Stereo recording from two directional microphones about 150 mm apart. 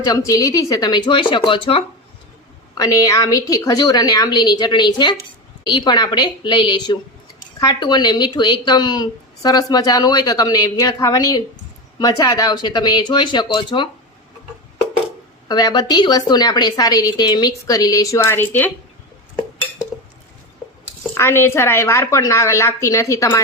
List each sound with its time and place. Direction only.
0.0 s a woman's voice: 25° left (ahead or behind)
2.7 s a woman's voice: 25° left (ahead or behind)
15.4 s a woman's voice: 25° left (ahead or behind)
21.2 s a woman's voice: 15° left (ahead or behind)